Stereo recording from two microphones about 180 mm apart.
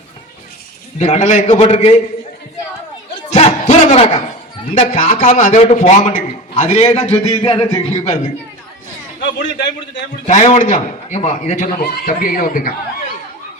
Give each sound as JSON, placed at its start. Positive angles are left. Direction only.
{"t": 0.9, "sound": "a man's voice", "side_deg": 40}
{"t": 3.2, "sound": "battle cry", "side_deg": 35}
{"t": 4.7, "sound": "a man's voice", "side_deg": 40}
{"t": 9.6, "sound": "a man's voice", "side_deg": 75}
{"t": 10.2, "sound": "a man's voice", "side_deg": 40}